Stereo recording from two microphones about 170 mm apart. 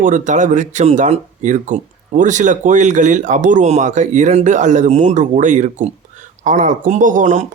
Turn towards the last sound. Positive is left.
turn(degrees=-45)  # may be behind; listen again after turning